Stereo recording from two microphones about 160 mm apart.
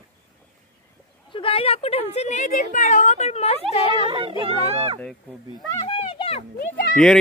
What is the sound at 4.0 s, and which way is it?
Speech, 35° right (ahead or behind).